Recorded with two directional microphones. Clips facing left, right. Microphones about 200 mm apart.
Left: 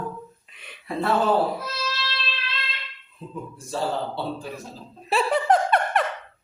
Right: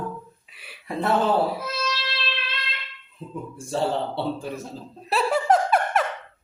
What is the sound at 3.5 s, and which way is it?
Speech, 25° right (ahead or behind).